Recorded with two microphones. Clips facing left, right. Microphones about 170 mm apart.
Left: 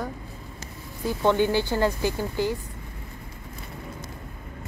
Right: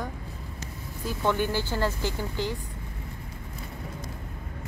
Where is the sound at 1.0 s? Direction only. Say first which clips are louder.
Left 5 dB; 20° left (ahead or behind).